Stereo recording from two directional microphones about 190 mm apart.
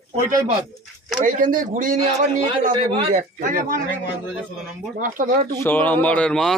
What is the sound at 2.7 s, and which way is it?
Speech, 35° right (ahead or behind).